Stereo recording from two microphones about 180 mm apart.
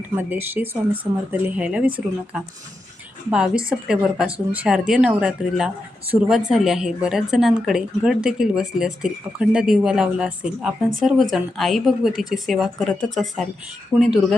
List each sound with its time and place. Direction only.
0.2 s speech: 10° right (ahead or behind)
3.2 s speech: 5° right (ahead or behind)